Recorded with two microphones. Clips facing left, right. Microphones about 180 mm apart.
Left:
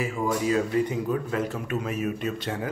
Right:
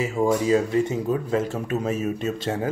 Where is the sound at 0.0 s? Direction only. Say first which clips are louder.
Right 4 dB; 25° right (ahead or behind).